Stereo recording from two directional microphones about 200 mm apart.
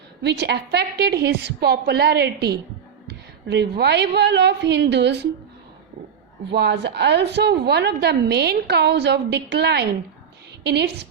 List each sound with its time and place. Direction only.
0.2 s a woman's voice: 55° right (ahead or behind)
6.5 s a woman's voice: 55° right (ahead or behind)